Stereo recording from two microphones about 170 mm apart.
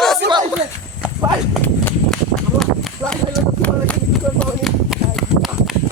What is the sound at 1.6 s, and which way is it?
Horse, 10° left (ahead or behind).